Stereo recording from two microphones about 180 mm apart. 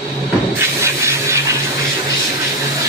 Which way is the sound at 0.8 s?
15° right (ahead or behind).